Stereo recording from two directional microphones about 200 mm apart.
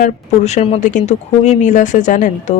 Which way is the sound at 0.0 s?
35° left (ahead or behind).